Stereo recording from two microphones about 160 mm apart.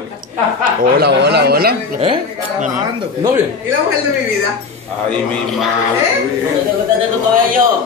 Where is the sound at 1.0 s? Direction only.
90° right.